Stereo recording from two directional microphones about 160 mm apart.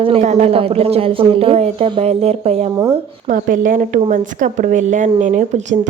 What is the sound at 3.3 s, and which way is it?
A woman's voice, 55° right (ahead or behind).